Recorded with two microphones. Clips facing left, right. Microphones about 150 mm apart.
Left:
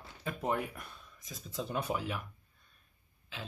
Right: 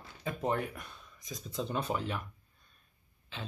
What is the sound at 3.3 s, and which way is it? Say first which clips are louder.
Speech: right 2 dB; 5° left (ahead or behind).